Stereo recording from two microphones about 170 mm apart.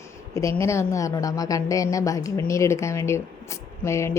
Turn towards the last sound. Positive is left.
turn(degrees=15)  # may be behind; listen again after turning